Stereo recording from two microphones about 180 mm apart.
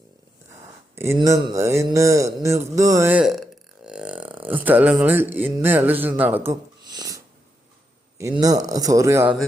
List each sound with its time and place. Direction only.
0.9 s speech: 15° right (ahead or behind)
8.2 s a man's voice: 20° right (ahead or behind)